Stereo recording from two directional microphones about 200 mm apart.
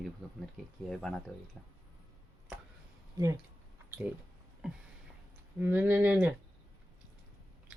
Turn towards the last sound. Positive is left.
turn(degrees=-5)  # may be behind; listen again after turning